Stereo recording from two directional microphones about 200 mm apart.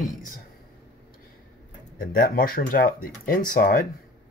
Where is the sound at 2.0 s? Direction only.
50° left (ahead or behind).